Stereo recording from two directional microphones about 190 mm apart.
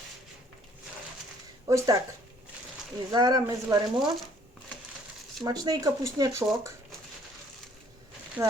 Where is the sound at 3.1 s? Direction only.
20° right (ahead or behind).